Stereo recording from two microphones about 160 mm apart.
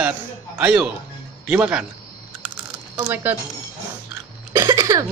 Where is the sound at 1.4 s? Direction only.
10° right (ahead or behind).